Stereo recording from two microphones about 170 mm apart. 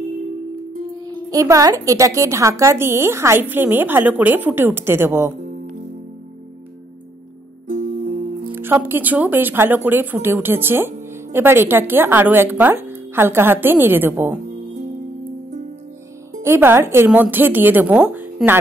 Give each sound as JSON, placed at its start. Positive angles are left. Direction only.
{"t": 1.0, "sound": "a woman's voice", "side_deg": -20}
{"t": 7.6, "sound": "music", "side_deg": -50}
{"t": 8.5, "sound": "a woman's voice", "side_deg": -15}
{"t": 16.3, "sound": "a woman's voice", "side_deg": -15}